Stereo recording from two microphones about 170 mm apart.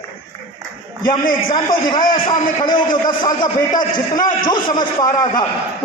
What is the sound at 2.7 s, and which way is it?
A man's voice, 25° left (ahead or behind).